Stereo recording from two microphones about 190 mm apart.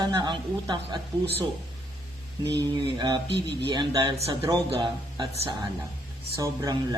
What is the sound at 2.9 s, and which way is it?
Speech, 20° right (ahead or behind).